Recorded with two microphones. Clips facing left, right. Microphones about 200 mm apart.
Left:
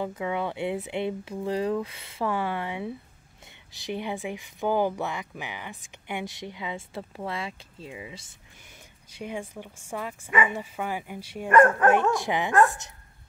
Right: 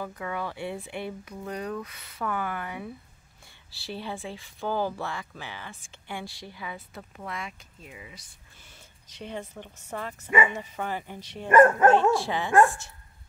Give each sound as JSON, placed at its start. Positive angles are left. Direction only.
{"t": 0.0, "sound": "speech", "side_deg": 20}
{"t": 9.1, "sound": "speech", "side_deg": 10}